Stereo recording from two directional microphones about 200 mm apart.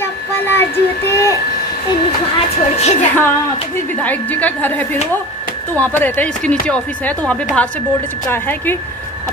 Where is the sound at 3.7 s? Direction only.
10° left (ahead or behind).